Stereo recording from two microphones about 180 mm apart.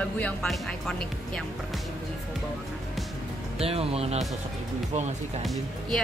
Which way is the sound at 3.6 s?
35° right (ahead or behind).